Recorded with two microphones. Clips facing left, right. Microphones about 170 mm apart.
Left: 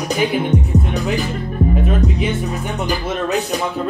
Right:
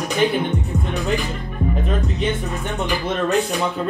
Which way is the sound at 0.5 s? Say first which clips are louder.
Left 6 dB; 35° left (ahead or behind).